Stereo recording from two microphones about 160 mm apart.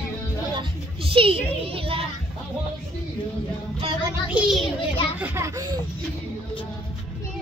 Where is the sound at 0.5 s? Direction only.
35° right (ahead or behind).